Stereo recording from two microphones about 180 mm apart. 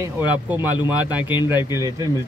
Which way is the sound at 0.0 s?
10° right (ahead or behind).